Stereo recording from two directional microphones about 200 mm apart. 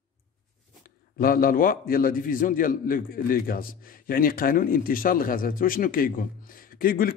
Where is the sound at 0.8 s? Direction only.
45° left (ahead or behind).